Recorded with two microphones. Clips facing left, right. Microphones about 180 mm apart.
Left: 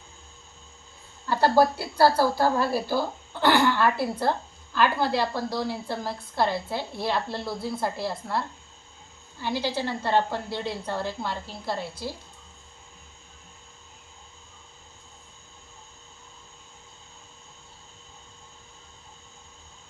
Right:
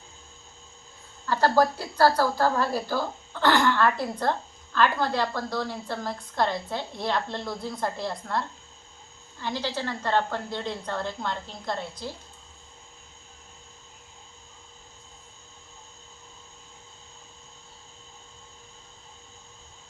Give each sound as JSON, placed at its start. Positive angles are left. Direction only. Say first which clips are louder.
{"t": 1.3, "sound": "speech", "louder": "left 1 dB", "side_deg": 15}